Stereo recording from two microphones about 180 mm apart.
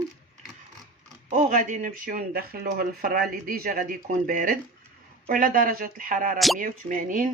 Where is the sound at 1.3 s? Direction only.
45° right (ahead or behind).